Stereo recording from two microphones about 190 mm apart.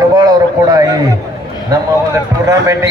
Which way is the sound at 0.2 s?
20° right (ahead or behind).